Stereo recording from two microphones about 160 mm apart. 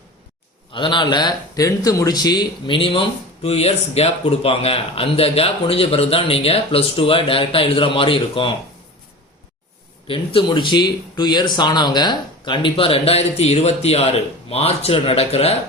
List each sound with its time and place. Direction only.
0.7 s speech: 30° left (ahead or behind)
10.1 s speech: 30° left (ahead or behind)